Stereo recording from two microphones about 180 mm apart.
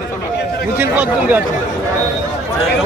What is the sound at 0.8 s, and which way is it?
Speech, 10° right (ahead or behind).